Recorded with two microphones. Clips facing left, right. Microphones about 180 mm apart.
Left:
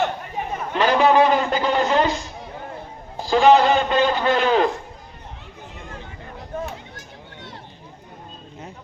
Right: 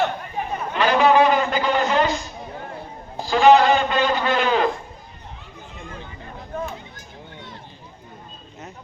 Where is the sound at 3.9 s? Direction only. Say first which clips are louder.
Left 2 dB; 30° left (ahead or behind).